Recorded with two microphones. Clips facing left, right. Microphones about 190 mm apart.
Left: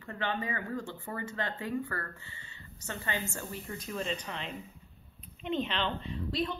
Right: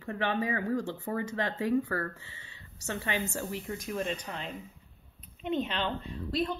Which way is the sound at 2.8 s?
80° right.